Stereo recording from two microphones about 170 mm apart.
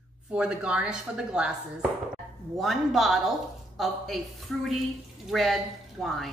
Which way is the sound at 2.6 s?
Centre (ahead or behind).